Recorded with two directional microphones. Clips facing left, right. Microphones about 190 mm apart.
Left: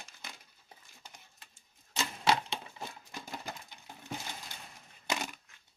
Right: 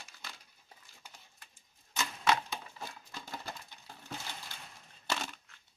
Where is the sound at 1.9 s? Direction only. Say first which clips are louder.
Left 1 dB; 30° left (ahead or behind).